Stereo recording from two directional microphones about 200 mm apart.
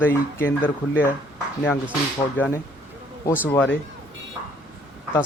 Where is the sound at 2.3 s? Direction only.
10° left (ahead or behind).